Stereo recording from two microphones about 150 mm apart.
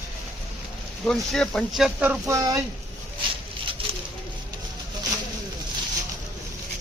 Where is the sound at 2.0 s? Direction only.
20° right (ahead or behind).